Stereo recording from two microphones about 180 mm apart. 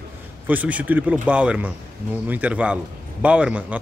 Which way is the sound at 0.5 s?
10° right (ahead or behind).